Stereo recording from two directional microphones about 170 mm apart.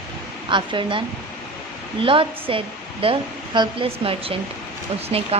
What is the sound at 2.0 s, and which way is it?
Speech, 30° right (ahead or behind).